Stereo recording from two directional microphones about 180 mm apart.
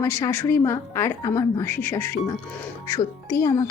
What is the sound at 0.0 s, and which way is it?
A woman's voice, 15° left (ahead or behind).